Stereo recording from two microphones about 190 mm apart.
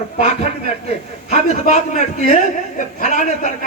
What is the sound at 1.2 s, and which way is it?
A man's voice, 35° left (ahead or behind).